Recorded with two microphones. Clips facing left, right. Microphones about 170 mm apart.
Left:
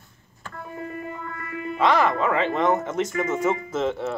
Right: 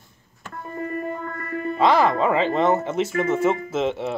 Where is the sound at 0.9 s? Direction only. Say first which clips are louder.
Right 5 dB; 45° right (ahead or behind).